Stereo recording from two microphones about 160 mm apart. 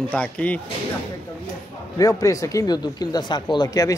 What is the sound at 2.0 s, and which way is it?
Speech, 20° left (ahead or behind).